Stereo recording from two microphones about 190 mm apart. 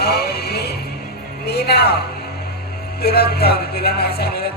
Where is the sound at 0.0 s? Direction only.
55° left (ahead or behind).